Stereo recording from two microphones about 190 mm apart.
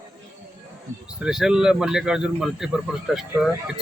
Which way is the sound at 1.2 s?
5° right (ahead or behind).